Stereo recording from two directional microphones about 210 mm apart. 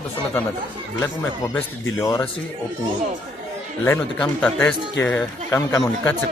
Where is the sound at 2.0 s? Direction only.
15° left (ahead or behind).